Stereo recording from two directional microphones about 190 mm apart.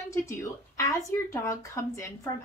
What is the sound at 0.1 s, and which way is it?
Speech, 15° left (ahead or behind).